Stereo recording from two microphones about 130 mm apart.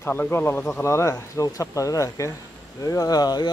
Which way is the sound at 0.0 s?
15° left (ahead or behind).